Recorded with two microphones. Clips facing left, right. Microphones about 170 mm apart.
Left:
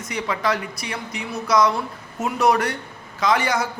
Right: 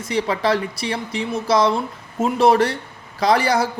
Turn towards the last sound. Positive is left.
turn(degrees=-35)  # may be behind; listen again after turning